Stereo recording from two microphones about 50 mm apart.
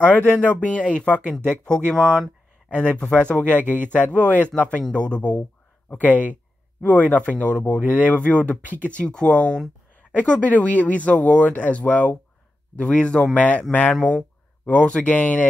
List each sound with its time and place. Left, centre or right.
0.0 s speech: left; by 2.0 s centre
3.0 s speech: left